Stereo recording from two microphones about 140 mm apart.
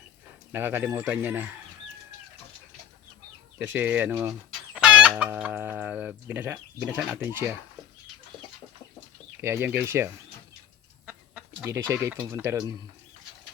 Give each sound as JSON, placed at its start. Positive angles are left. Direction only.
{"t": 0.5, "sound": "chicken", "side_deg": -15}
{"t": 3.6, "sound": "chicken", "side_deg": -15}
{"t": 9.4, "sound": "chicken", "side_deg": -20}
{"t": 12.1, "sound": "speech", "side_deg": -25}